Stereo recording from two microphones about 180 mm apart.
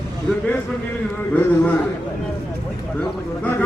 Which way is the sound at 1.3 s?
10° left (ahead or behind).